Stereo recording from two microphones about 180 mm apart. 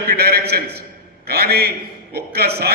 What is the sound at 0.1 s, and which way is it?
A man's voice, 60° right (ahead or behind).